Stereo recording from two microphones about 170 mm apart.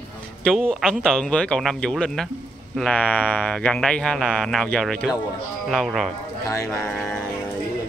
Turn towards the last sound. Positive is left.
turn(degrees=15)  # may be behind; listen again after turning